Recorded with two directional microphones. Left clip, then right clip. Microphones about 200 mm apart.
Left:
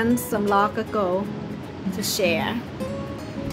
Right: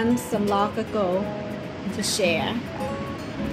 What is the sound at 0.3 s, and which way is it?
Speech, 5° left (ahead or behind).